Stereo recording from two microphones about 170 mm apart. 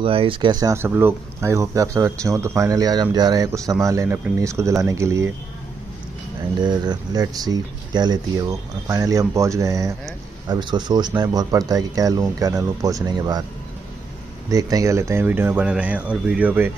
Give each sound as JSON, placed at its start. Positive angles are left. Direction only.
{"t": 0.0, "sound": "speech", "side_deg": -30}
{"t": 6.6, "sound": "speech", "side_deg": -25}
{"t": 14.5, "sound": "speech", "side_deg": -20}